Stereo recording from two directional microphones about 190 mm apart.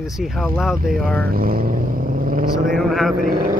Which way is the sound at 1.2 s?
50° right (ahead or behind).